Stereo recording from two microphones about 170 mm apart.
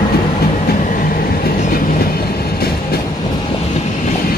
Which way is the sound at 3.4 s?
40° left (ahead or behind).